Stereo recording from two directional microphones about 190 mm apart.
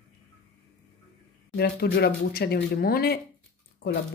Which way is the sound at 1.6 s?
55° left (ahead or behind).